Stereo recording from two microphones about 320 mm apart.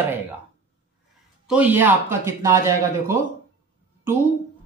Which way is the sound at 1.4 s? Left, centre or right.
Centre.